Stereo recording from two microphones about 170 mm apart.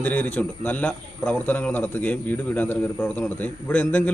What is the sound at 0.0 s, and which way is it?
A man's voice, 10° left (ahead or behind).